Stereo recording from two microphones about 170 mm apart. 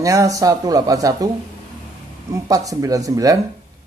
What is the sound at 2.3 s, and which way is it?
Speech, 20° right (ahead or behind).